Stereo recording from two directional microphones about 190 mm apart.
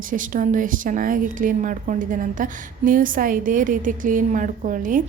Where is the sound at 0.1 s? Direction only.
45° right (ahead or behind).